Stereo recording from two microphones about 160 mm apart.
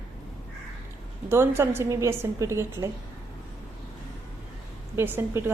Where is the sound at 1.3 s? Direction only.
15° right (ahead or behind).